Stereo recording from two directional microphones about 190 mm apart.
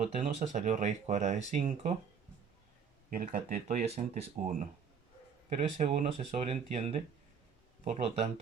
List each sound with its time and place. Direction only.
0.2 s speech: 40° right (ahead or behind)
3.1 s speech: 50° right (ahead or behind)